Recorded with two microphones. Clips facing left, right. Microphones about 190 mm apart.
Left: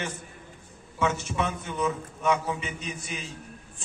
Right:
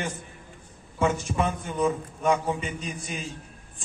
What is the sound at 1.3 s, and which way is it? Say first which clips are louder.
A man's voice: right 3 dB; 40° right (ahead or behind).